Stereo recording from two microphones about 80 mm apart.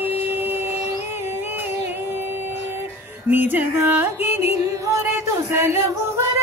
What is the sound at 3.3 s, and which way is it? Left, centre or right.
Music, right.